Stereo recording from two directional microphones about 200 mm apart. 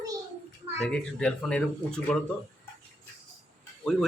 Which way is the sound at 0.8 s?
5° left (ahead or behind).